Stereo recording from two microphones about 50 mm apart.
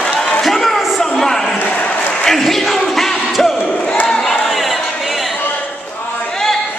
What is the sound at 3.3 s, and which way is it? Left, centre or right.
Battle cry, centre.